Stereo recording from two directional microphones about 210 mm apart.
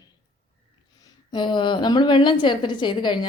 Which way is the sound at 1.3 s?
20° left (ahead or behind).